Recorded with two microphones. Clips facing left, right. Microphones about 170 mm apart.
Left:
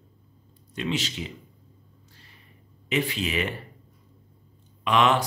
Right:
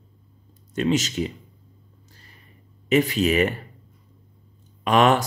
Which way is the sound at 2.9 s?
45° right (ahead or behind).